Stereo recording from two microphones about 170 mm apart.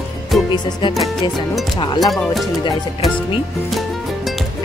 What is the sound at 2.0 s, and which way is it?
Speech, centre (ahead or behind).